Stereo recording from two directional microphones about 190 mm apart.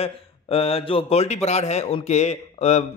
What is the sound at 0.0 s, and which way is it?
Speech, 30° left (ahead or behind).